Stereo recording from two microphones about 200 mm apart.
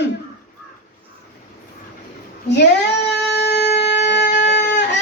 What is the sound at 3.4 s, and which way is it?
Shofar, 60° left (ahead or behind).